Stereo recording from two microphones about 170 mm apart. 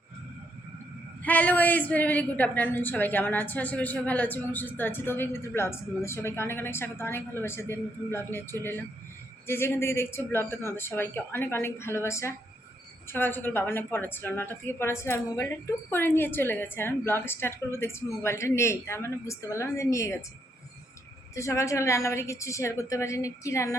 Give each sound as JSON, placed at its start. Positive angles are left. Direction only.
{"t": 1.2, "sound": "a woman's voice", "side_deg": 10}
{"t": 9.5, "sound": "a woman's voice", "side_deg": 15}
{"t": 21.3, "sound": "a woman's voice", "side_deg": 15}